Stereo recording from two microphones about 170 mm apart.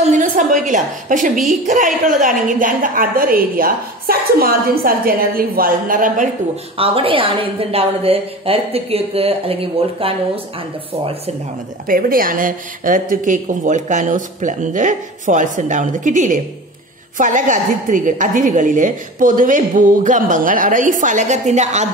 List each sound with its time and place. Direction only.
0.0 s a woman's voice: 50° right (ahead or behind)
6.8 s a woman's voice: 35° right (ahead or behind)
11.9 s a woman's voice: 55° right (ahead or behind)